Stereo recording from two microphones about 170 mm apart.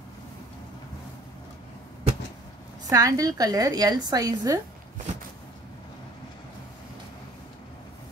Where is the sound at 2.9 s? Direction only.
20° right (ahead or behind).